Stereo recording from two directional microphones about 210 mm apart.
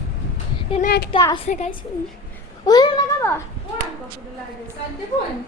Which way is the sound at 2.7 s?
20° left (ahead or behind).